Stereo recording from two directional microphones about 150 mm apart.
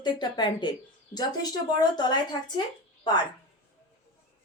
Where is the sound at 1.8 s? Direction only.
30° left (ahead or behind).